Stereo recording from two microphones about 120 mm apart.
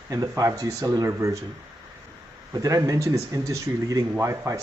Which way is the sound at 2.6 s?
25° right (ahead or behind).